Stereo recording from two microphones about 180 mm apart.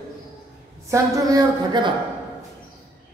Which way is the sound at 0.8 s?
20° right (ahead or behind).